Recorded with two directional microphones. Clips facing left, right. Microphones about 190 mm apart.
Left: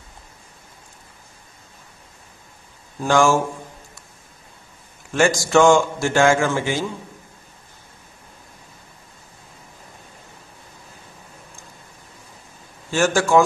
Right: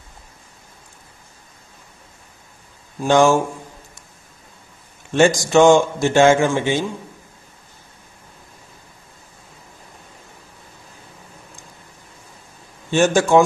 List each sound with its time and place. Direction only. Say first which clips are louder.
3.0 s speech: right 3 dB; 20° right (ahead or behind)
5.1 s a man's voice: right 3 dB; 20° right (ahead or behind)
12.9 s a man's voice: right 3 dB; 20° right (ahead or behind)